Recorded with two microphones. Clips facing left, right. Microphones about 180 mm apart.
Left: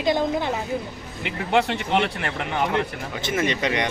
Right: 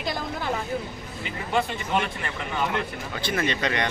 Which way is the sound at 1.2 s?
75° left (ahead or behind).